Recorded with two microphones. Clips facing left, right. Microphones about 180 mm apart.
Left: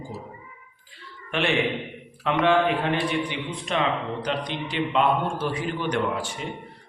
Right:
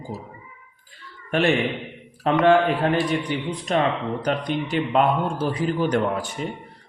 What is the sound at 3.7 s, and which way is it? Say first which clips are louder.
Mantra: right 3 dB; 40° right (ahead or behind).